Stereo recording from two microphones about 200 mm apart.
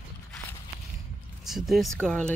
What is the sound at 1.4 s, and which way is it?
Speech, centre (ahead or behind).